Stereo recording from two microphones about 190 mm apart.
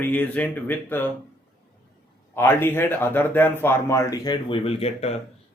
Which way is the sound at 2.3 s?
10° left (ahead or behind).